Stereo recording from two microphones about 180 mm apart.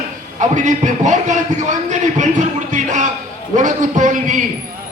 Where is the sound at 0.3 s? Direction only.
45° right (ahead or behind).